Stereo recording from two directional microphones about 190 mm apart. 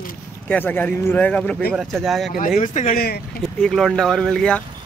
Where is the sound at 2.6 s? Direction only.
40° left (ahead or behind).